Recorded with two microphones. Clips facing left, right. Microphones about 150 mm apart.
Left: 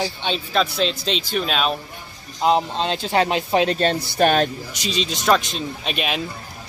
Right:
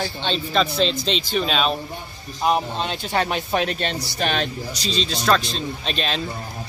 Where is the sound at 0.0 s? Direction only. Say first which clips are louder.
Even; 10° left (ahead or behind).